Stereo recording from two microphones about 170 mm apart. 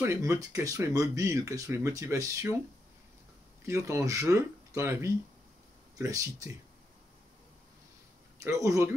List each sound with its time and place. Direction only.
0.0 s speech: 15° right (ahead or behind)
3.6 s speech: 15° right (ahead or behind)
8.5 s speech: 20° right (ahead or behind)